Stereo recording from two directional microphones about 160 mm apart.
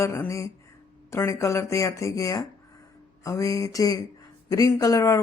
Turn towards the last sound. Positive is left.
turn(degrees=20)  # may be behind; listen again after turning